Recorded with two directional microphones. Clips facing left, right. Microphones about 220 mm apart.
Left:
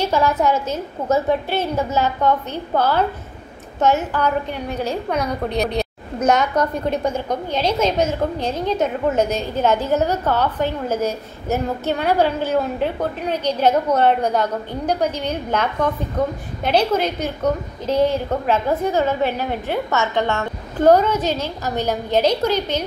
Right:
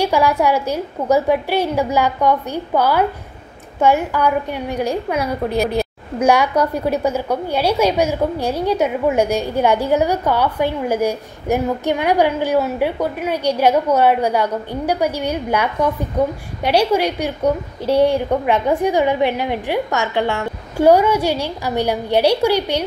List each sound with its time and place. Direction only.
0.0 s a woman's voice: 10° right (ahead or behind)